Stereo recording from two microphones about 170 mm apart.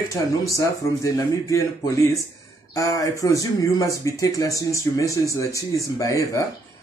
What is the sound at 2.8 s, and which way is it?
Speech, 20° left (ahead or behind).